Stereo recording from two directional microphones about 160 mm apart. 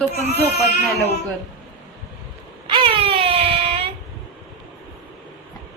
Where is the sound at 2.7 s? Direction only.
30° right (ahead or behind).